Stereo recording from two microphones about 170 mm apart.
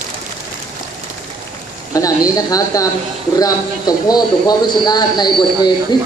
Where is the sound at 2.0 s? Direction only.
20° left (ahead or behind).